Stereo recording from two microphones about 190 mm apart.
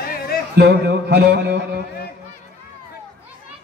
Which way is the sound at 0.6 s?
60° right (ahead or behind).